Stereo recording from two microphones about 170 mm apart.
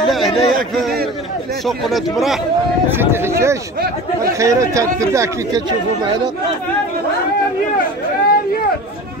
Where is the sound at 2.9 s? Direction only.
15° right (ahead or behind).